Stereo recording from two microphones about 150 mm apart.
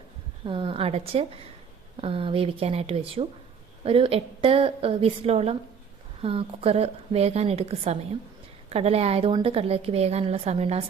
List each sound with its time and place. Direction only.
0.4 s a woman's voice: 35° right (ahead or behind)